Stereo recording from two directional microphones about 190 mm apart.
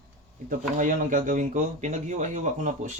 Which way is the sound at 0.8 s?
45° right (ahead or behind).